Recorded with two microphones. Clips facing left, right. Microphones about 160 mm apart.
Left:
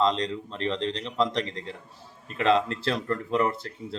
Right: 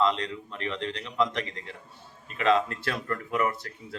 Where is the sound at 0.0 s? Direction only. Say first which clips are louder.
Left 2 dB; 35° left (ahead or behind).